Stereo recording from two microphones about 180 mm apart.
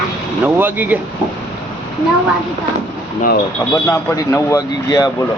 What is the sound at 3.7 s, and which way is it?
Speech, 15° left (ahead or behind).